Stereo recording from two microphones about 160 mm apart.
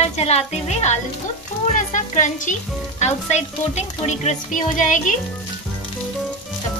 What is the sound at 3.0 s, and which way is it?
Frying, 45° left (ahead or behind).